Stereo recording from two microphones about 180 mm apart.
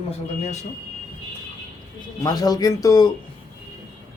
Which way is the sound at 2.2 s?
20° left (ahead or behind).